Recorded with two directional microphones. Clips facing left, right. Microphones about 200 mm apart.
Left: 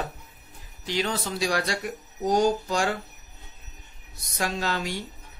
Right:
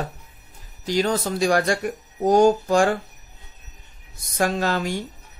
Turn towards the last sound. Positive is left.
turn(degrees=-50)  # may be behind; listen again after turning